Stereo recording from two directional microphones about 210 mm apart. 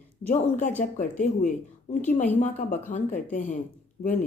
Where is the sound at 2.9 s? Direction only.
35° left (ahead or behind).